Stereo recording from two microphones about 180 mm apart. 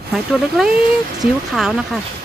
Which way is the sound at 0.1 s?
Centre (ahead or behind).